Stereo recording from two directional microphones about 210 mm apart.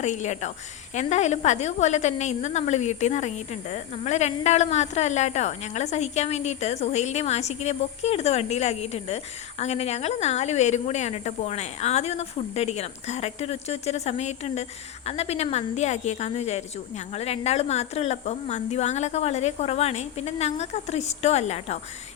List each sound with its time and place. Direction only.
0.0 s a woman's voice: 35° left (ahead or behind)